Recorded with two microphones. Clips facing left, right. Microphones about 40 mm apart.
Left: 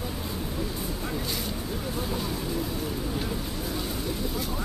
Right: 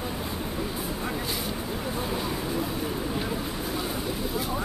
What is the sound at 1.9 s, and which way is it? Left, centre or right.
Vehicle, centre.